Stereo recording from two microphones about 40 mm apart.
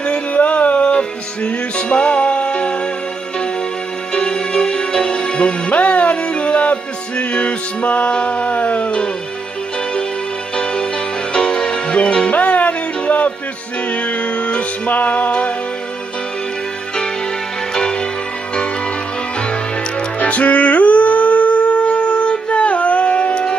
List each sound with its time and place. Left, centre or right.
0.3 s a sound: left
0.9 s music: left
4.1 s music: centre; by 8.9 s left
10.5 s music: left
12.4 s music: left
15.0 s music: left
17.7 s music: centre
19.4 s music: left